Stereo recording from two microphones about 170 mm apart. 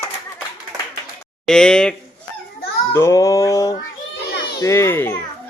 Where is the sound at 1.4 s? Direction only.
5° left (ahead or behind).